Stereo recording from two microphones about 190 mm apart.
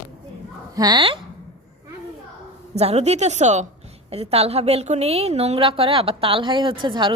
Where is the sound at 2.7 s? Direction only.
35° right (ahead or behind).